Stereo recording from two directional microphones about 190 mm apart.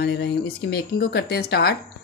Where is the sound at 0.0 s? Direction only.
60° left (ahead or behind).